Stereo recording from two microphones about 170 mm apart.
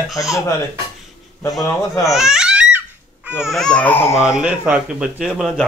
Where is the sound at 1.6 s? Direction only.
20° left (ahead or behind).